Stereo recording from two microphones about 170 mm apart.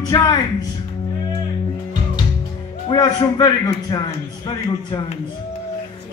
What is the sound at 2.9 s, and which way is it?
A man's voice, 25° left (ahead or behind).